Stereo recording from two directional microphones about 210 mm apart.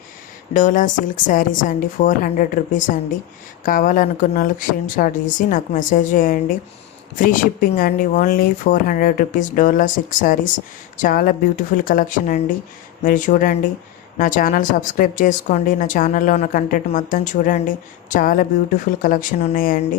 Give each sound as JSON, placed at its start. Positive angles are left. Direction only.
{"t": 0.5, "sound": "speech", "side_deg": 40}